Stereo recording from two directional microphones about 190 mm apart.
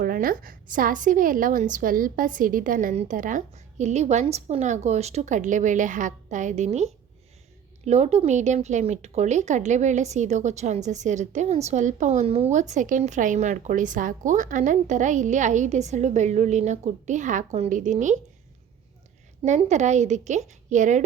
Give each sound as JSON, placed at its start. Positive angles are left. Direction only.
{"t": 0.0, "sound": "speech", "side_deg": -50}
{"t": 19.5, "sound": "speech", "side_deg": -35}